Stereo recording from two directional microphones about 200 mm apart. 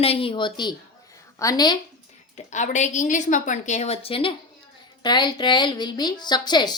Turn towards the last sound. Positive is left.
turn(degrees=20)  # may be behind; listen again after turning